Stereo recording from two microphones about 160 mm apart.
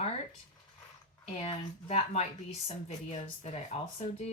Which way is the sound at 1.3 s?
40° left (ahead or behind).